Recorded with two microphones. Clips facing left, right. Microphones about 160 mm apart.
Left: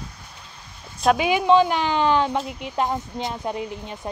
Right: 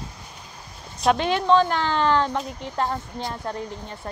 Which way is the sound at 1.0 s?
5° left (ahead or behind).